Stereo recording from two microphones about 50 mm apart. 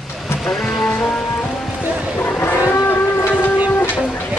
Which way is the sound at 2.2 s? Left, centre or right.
Left.